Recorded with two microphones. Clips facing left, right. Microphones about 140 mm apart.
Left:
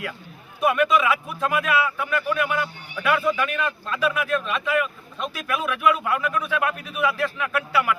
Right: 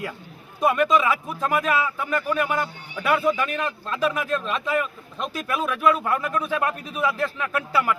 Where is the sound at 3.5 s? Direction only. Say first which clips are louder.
Left 1 dB; 35° right (ahead or behind).